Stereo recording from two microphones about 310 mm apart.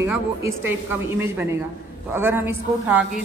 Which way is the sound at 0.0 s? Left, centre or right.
Centre.